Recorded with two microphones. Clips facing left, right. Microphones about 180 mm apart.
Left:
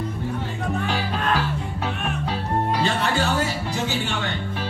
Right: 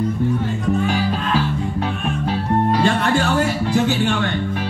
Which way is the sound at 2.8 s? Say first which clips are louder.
Right 5 dB; 55° right (ahead or behind).